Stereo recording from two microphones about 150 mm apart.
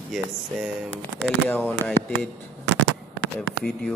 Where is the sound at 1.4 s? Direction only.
15° left (ahead or behind).